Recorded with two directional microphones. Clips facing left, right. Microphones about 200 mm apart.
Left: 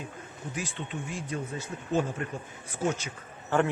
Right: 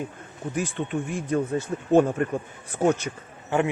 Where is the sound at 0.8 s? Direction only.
55° right (ahead or behind).